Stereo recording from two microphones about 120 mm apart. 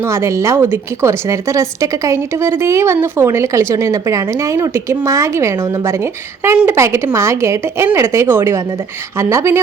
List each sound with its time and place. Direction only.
0.0 s a woman's voice: 25° right (ahead or behind)